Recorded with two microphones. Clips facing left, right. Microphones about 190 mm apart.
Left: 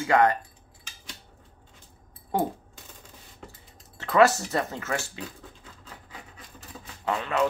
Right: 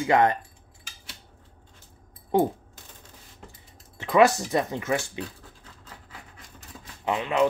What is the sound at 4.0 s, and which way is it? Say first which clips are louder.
Speech: right 1 dB; 15° right (ahead or behind).